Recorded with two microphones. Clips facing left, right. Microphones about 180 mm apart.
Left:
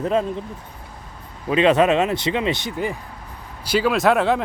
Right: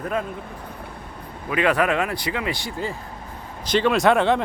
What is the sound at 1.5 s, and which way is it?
Speech, 20° left (ahead or behind).